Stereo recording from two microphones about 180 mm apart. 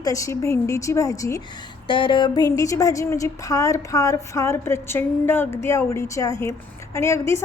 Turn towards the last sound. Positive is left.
turn(degrees=15)  # may be behind; listen again after turning